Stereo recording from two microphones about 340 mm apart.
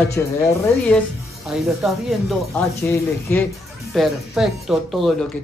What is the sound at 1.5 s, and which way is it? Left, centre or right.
A woman's voice, centre.